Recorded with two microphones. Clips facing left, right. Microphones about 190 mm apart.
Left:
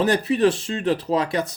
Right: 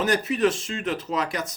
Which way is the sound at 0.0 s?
30° left (ahead or behind).